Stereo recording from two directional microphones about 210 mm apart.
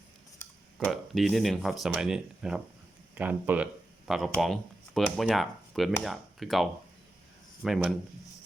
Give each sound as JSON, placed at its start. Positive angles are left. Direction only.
{"t": 0.9, "sound": "speech", "side_deg": 0}